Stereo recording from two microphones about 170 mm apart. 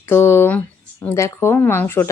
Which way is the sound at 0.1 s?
15° left (ahead or behind).